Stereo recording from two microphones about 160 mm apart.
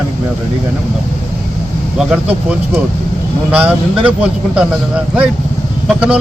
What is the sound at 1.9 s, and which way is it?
A man's voice, 5° right (ahead or behind).